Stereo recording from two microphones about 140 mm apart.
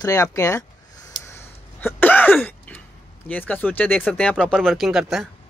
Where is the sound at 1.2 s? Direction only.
20° left (ahead or behind).